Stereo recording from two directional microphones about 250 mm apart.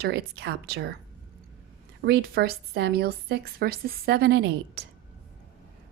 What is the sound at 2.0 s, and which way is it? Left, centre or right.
A woman's voice, right.